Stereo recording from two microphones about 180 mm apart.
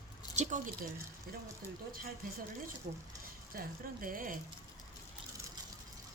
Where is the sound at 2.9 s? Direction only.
45° right (ahead or behind).